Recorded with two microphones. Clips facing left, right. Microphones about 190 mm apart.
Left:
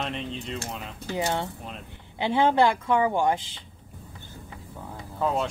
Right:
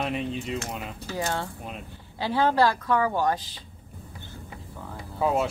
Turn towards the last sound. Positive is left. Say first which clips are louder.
# right 2 dB
turn(degrees=-5)  # may be behind; listen again after turning